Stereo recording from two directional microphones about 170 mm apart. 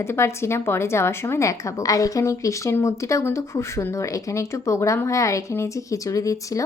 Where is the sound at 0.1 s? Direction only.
15° left (ahead or behind).